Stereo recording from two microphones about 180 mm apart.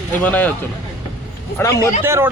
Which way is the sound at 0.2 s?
10° left (ahead or behind).